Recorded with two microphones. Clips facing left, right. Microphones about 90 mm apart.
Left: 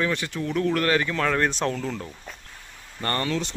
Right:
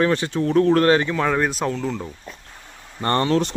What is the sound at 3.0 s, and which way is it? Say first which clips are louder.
Speech: right 6 dB; 30° right (ahead or behind).